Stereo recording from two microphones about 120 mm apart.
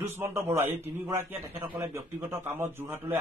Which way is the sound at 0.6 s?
20° right (ahead or behind).